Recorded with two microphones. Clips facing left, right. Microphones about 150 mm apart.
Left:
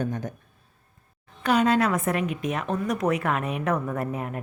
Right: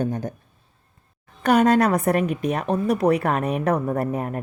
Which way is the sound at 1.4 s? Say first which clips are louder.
Right 4 dB; 45° right (ahead or behind).